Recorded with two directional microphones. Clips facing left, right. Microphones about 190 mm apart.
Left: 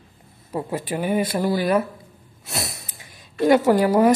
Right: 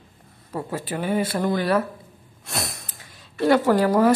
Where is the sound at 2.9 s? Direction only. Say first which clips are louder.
Left 1 dB; 15° left (ahead or behind).